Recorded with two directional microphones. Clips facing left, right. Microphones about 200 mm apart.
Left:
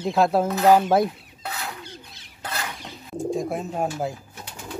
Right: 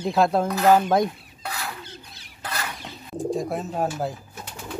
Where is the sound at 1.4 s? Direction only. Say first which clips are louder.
Even; 20° left (ahead or behind).